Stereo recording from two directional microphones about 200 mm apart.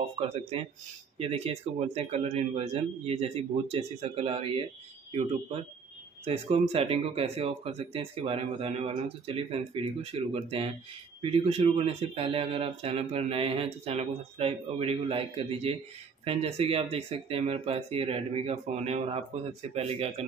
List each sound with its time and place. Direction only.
0.3 s speech: 30° right (ahead or behind)
6.2 s speech: 30° right (ahead or behind)